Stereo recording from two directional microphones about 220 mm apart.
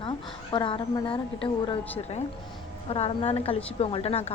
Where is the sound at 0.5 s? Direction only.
20° left (ahead or behind).